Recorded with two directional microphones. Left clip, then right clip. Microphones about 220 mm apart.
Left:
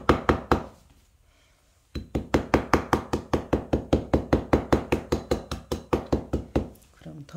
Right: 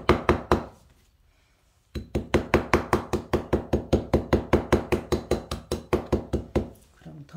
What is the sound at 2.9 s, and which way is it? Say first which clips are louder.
Knock: even; 5° right (ahead or behind).